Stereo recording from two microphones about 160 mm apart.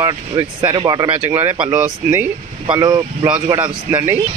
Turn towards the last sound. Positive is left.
turn(degrees=-15)  # may be behind; listen again after turning